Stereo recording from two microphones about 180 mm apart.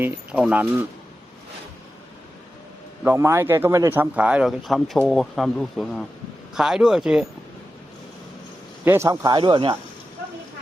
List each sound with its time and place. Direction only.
0.0 s a man's voice: 5° right (ahead or behind)
3.0 s a man's voice: 15° right (ahead or behind)
8.8 s speech: 15° right (ahead or behind)